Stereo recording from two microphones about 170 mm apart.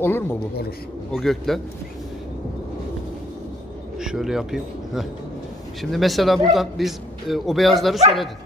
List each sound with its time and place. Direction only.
0.0 s a man's voice: 15° left (ahead or behind)
1.1 s a man's voice: centre (ahead or behind)
4.0 s a man's voice: 5° right (ahead or behind)